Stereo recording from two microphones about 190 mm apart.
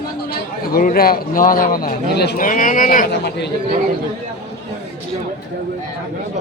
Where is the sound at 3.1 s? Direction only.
60° left (ahead or behind).